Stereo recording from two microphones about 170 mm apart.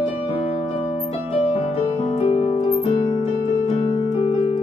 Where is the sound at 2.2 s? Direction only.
40° left (ahead or behind).